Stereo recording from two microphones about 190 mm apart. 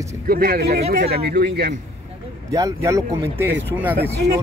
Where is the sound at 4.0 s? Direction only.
55° right (ahead or behind).